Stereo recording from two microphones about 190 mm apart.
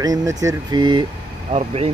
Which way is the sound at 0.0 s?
20° right (ahead or behind).